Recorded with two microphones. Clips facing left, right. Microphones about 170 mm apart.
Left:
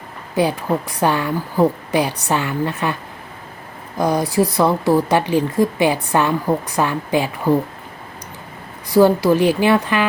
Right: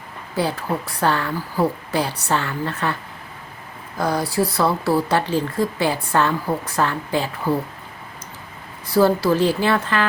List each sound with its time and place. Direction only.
0.3 s speech: 15° left (ahead or behind)
8.9 s speech: 15° left (ahead or behind)